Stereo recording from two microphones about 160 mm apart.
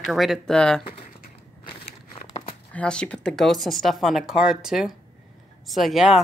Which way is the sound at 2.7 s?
5° left (ahead or behind).